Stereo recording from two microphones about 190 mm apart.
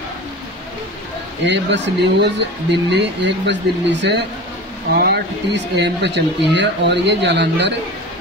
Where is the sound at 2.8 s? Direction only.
65° right (ahead or behind).